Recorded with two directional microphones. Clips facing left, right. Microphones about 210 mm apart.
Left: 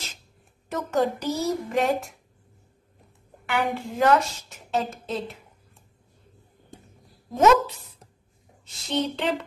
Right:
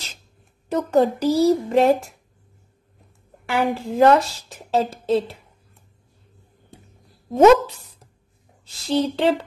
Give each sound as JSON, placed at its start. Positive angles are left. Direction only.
{"t": 0.7, "sound": "a woman's voice", "side_deg": -30}
{"t": 3.4, "sound": "a woman's voice", "side_deg": -35}
{"t": 7.3, "sound": "a woman's voice", "side_deg": -30}
{"t": 8.8, "sound": "a woman's voice", "side_deg": -30}